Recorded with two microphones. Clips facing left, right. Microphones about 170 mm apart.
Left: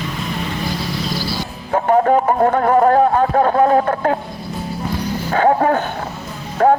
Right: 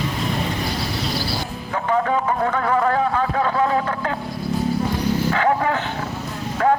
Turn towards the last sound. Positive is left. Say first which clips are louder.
# left 5 dB
turn(degrees=40)  # may be behind; listen again after turning